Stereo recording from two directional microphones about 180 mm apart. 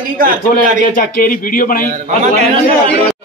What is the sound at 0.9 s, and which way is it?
Speech, 50° left (ahead or behind).